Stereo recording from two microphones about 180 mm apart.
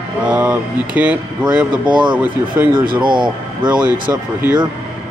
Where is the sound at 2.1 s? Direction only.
10° right (ahead or behind).